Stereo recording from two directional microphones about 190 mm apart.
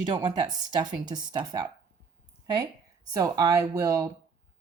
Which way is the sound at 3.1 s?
20° right (ahead or behind).